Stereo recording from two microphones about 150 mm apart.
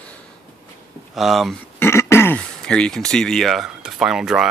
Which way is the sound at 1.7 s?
15° left (ahead or behind).